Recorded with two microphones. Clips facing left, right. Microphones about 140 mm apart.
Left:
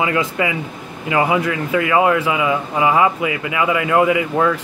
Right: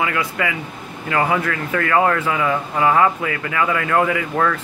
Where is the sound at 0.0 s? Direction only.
20° left (ahead or behind).